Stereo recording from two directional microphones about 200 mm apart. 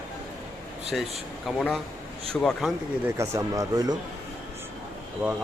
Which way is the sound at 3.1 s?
15° right (ahead or behind).